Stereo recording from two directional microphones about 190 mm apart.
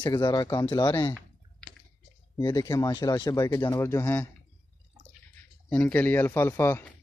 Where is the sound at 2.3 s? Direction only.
20° left (ahead or behind).